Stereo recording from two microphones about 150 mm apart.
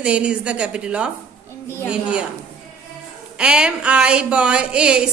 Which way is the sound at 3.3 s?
5° right (ahead or behind).